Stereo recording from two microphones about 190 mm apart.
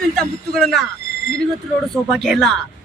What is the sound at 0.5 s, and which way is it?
Speech, centre (ahead or behind).